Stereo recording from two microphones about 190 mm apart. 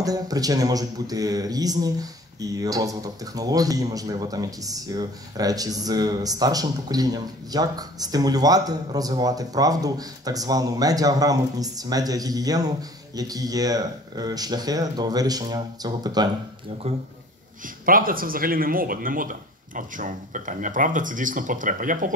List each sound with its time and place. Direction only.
0.0 s speech: 20° right (ahead or behind)
17.8 s speech: 50° right (ahead or behind)